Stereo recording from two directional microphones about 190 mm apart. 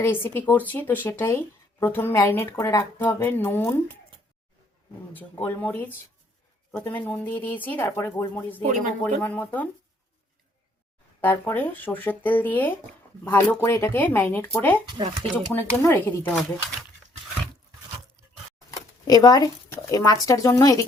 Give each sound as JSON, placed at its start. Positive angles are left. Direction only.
{"t": 0.0, "sound": "speech", "side_deg": 10}
{"t": 5.1, "sound": "speech", "side_deg": 10}
{"t": 11.2, "sound": "speech", "side_deg": 10}
{"t": 14.8, "sound": "speech", "side_deg": -25}
{"t": 15.5, "sound": "speech", "side_deg": 10}
{"t": 19.0, "sound": "speech", "side_deg": 20}